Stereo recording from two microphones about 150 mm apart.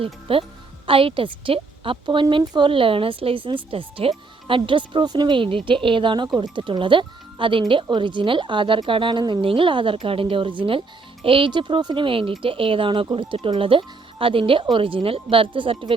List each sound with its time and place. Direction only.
0.0 s speech: 40° right (ahead or behind)